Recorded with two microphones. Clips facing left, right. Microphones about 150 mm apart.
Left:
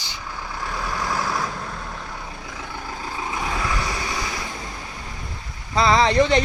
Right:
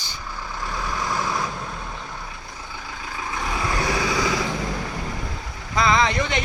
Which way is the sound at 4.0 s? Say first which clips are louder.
Right 6 dB; 90° right.